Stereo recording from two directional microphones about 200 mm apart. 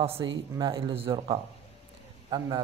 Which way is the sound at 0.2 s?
20° right (ahead or behind).